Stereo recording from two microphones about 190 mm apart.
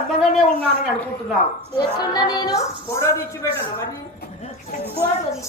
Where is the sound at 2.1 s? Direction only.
20° left (ahead or behind).